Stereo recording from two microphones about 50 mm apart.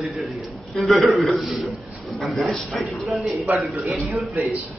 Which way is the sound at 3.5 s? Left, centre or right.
Right.